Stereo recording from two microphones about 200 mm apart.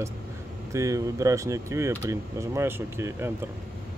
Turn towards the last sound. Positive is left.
turn(degrees=-10)  # may be behind; listen again after turning